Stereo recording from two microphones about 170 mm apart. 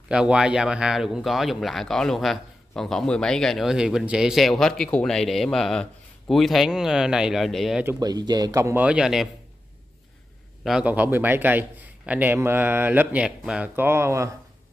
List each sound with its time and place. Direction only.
0.1 s speech: 5° right (ahead or behind)
7.8 s a man's voice: 20° right (ahead or behind); by 9.3 s 5° right (ahead or behind)
10.6 s a man's voice: 5° right (ahead or behind)